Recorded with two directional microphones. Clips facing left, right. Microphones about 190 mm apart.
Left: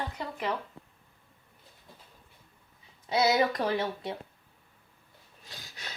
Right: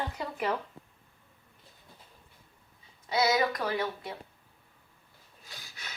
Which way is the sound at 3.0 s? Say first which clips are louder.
Left 2 dB; 25° left (ahead or behind).